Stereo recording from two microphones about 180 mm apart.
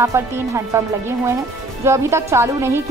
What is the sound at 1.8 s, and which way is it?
A woman's voice, 15° right (ahead or behind).